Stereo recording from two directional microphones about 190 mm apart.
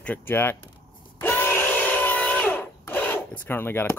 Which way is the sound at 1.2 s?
10° left (ahead or behind).